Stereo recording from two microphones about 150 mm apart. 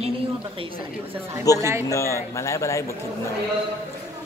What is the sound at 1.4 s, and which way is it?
Speech, 25° left (ahead or behind).